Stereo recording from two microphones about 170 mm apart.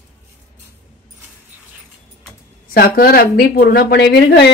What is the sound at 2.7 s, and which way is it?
Speech, 60° left (ahead or behind).